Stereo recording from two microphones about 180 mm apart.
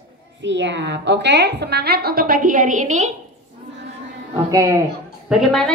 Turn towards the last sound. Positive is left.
turn(degrees=0)  # may be behind; listen again after turning